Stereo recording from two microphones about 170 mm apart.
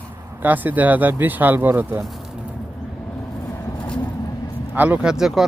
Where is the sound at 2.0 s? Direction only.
Centre (ahead or behind).